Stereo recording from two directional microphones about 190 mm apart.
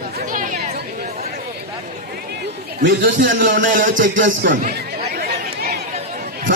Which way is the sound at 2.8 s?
80° right.